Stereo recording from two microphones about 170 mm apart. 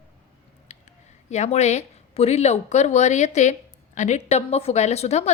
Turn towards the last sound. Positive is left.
turn(degrees=40)  # may be behind; listen again after turning